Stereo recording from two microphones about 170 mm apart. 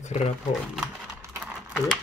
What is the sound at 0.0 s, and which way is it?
Speech, 40° left (ahead or behind).